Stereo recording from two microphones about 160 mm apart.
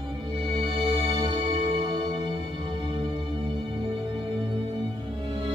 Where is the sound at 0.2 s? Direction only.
30° right (ahead or behind).